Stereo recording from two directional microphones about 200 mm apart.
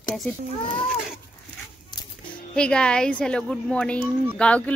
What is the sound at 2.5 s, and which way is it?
A woman's voice, 5° left (ahead or behind).